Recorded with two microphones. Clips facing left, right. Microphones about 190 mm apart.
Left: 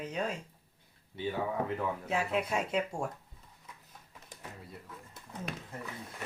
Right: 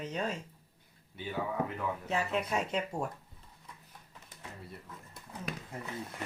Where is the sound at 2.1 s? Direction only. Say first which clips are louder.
Even; centre (ahead or behind).